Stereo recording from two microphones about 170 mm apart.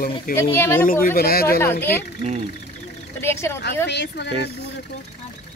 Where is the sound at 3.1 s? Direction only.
15° left (ahead or behind).